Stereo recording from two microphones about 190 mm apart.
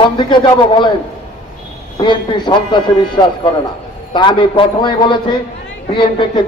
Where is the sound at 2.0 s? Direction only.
25° left (ahead or behind).